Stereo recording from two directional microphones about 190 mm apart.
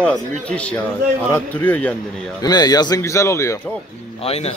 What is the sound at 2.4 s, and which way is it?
A man's voice, 20° left (ahead or behind).